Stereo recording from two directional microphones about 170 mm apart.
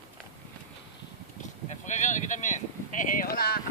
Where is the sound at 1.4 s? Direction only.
45° left (ahead or behind); by 3.6 s 65° left (ahead or behind).